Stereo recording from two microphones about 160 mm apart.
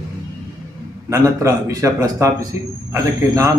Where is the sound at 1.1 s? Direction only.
20° right (ahead or behind).